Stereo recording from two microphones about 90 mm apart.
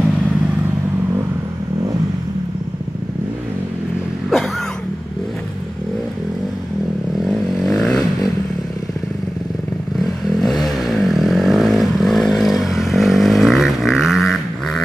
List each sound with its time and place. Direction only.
7.2 s vehicle: 5° left (ahead or behind)
9.9 s vehicle: centre (ahead or behind)